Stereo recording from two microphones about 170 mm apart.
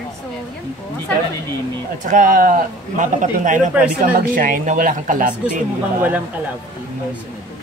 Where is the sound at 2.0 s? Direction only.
50° right (ahead or behind).